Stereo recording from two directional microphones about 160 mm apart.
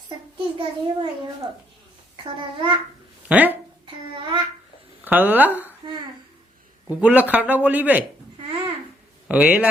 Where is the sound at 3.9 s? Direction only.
30° right (ahead or behind).